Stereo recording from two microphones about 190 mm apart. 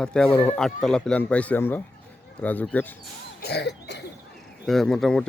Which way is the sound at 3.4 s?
60° left (ahead or behind).